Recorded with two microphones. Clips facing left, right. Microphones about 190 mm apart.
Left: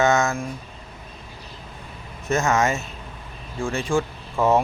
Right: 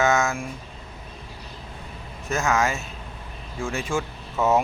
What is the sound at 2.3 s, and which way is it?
A man's voice, centre (ahead or behind).